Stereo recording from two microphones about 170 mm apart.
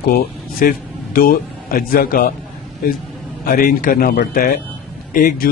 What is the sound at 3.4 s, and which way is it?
Speech, 55° left (ahead or behind).